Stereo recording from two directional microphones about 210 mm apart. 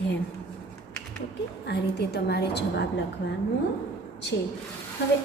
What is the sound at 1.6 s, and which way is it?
A woman's voice, 50° left (ahead or behind).